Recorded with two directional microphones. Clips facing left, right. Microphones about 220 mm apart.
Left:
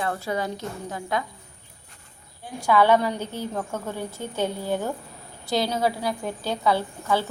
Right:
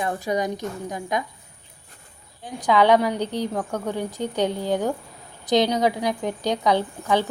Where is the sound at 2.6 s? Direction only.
15° right (ahead or behind).